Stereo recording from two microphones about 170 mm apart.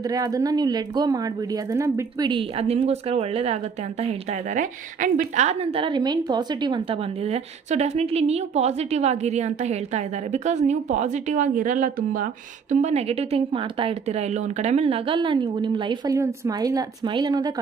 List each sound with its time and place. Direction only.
0.1 s a woman's voice: 20° right (ahead or behind); by 12.3 s 50° right (ahead or behind)
12.8 s speech: 40° right (ahead or behind)